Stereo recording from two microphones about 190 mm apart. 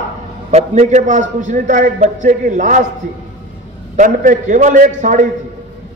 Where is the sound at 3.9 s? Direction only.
40° right (ahead or behind).